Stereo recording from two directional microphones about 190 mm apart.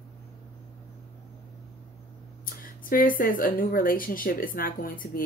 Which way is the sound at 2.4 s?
50° left (ahead or behind).